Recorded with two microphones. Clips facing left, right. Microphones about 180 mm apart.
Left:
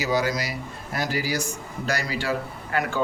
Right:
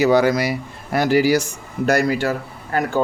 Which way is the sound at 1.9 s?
55° right (ahead or behind).